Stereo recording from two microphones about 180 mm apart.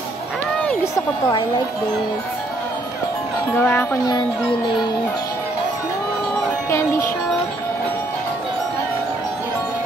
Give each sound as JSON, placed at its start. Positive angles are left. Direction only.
{"t": 3.5, "sound": "speech", "side_deg": 10}